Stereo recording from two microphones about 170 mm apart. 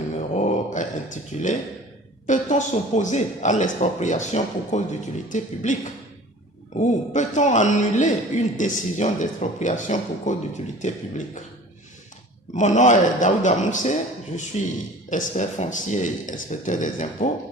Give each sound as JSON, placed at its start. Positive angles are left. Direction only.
{"t": 0.2, "sound": "a sound", "side_deg": 45}
{"t": 2.2, "sound": "speech", "side_deg": 45}
{"t": 12.5, "sound": "a man's voice", "side_deg": 45}